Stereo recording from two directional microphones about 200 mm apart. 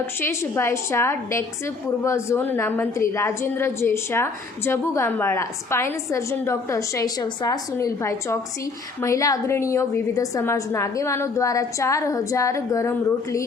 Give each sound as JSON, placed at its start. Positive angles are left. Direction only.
{"t": 0.2, "sound": "a woman's voice", "side_deg": 15}